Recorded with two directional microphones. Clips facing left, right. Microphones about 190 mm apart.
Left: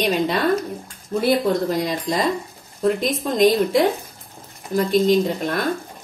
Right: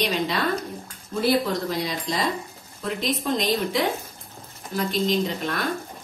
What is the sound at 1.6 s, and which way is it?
A woman's voice, 50° left (ahead or behind).